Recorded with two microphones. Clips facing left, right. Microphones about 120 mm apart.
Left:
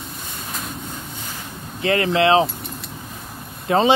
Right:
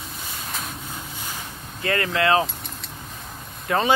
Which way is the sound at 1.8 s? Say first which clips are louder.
Left 5 dB; 25° left (ahead or behind).